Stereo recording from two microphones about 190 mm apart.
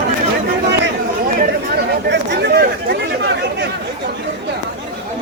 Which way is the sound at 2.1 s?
60° right (ahead or behind).